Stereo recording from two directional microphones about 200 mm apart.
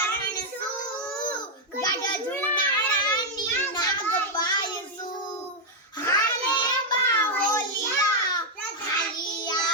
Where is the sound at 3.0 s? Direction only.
20° left (ahead or behind).